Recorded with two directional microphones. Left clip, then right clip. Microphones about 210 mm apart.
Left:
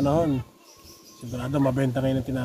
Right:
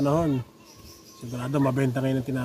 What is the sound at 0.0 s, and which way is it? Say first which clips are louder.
Speech: left 1 dB; 5° right (ahead or behind).